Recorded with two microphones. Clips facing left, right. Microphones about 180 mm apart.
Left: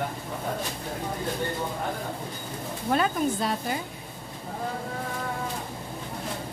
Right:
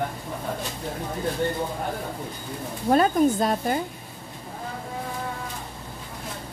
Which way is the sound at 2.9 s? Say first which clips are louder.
Right 6 dB; 40° right (ahead or behind).